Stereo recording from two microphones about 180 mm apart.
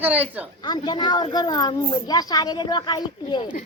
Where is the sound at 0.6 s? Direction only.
25° left (ahead or behind).